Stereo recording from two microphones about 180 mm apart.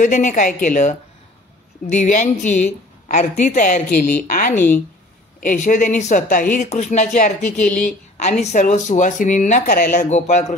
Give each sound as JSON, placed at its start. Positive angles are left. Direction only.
{"t": 0.0, "sound": "speech", "side_deg": 45}
{"t": 7.6, "sound": "a woman's voice", "side_deg": 5}
{"t": 8.2, "sound": "speech", "side_deg": 40}